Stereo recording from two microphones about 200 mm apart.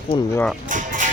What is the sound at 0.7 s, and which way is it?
Music, 40° right (ahead or behind).